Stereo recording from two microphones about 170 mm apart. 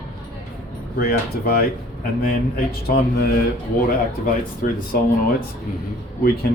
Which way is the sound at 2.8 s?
65° left (ahead or behind).